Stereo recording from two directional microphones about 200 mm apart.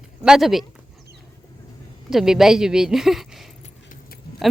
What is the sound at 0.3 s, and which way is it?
Speech, centre (ahead or behind).